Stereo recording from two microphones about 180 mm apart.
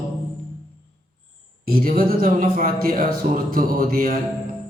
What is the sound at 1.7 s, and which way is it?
Speech, 55° right (ahead or behind).